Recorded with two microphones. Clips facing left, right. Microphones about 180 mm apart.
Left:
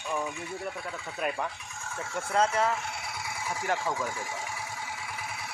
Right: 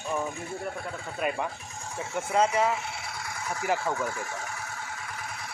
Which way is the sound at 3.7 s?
15° left (ahead or behind).